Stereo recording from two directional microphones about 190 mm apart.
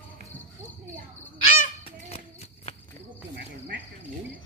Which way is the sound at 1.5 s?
30° left (ahead or behind).